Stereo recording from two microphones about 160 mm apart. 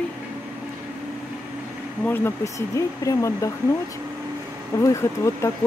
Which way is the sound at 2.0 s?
15° left (ahead or behind).